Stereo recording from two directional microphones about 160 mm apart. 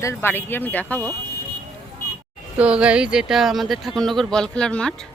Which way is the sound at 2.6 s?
5° right (ahead or behind).